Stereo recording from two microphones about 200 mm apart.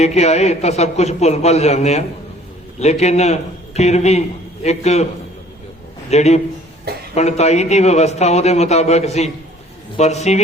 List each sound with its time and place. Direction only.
0.0 s a man's voice: 35° left (ahead or behind)
6.1 s a man's voice: 35° left (ahead or behind)